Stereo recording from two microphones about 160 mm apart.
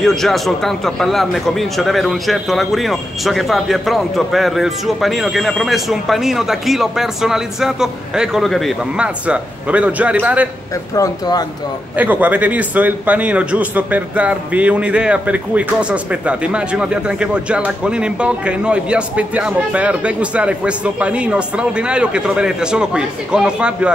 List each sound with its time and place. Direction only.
0.0 s a man's voice: centre (ahead or behind)
11.0 s speech: 25° left (ahead or behind)
12.0 s a man's voice: 10° right (ahead or behind)